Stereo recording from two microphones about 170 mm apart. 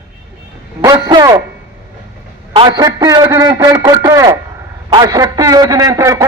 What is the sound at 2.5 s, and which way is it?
A man's voice, 25° right (ahead or behind).